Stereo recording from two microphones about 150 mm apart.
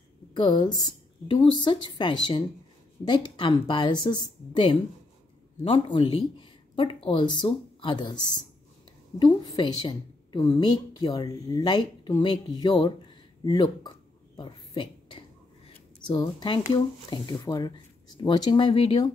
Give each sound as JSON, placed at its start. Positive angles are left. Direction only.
{"t": 0.4, "sound": "speech", "side_deg": 35}
{"t": 9.2, "sound": "speech", "side_deg": 30}
{"t": 13.4, "sound": "a sound", "side_deg": 30}
{"t": 16.1, "sound": "speech", "side_deg": 30}